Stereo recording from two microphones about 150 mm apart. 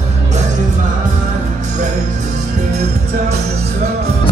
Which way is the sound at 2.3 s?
55° right (ahead or behind).